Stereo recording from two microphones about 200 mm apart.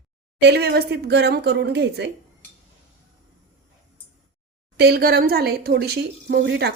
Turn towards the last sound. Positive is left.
turn(degrees=-55)  # may be behind; listen again after turning